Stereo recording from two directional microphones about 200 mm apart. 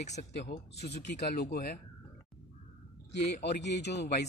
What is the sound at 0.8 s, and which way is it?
Speech, 55° left (ahead or behind).